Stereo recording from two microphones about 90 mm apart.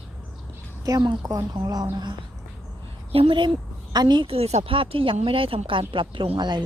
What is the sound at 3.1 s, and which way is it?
Speech, 80° right.